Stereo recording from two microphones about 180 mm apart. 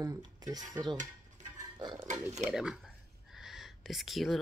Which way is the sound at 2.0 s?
40° right (ahead or behind).